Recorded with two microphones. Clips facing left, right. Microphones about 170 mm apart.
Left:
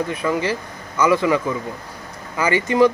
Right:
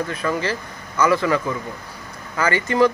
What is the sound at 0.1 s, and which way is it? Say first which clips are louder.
Speech: left 2 dB; 15° left (ahead or behind).